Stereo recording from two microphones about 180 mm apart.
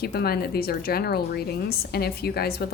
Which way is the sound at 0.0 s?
60° left (ahead or behind).